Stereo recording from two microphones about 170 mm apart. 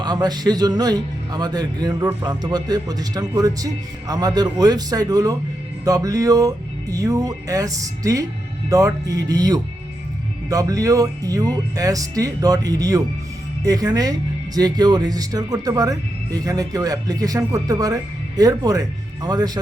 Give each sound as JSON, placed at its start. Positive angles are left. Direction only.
{"t": 0.0, "sound": "speech", "side_deg": -25}